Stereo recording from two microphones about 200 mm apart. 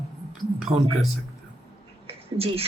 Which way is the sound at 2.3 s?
30° right (ahead or behind).